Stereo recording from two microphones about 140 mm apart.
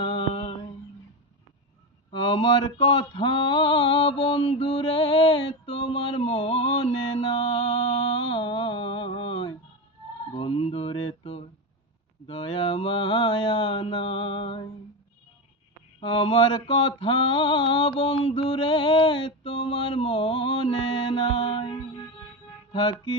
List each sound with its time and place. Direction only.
0.0 s mantra: 40° left (ahead or behind)
2.0 s mantra: 40° left (ahead or behind)
16.0 s mantra: 40° left (ahead or behind)